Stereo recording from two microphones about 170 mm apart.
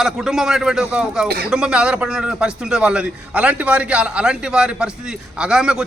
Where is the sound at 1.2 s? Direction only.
65° right (ahead or behind).